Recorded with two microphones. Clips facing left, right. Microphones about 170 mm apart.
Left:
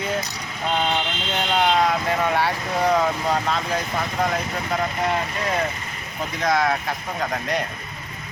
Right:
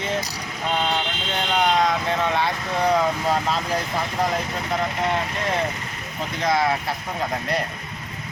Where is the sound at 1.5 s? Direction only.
5° left (ahead or behind).